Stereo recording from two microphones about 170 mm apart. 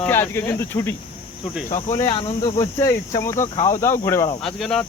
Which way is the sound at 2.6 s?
20° left (ahead or behind).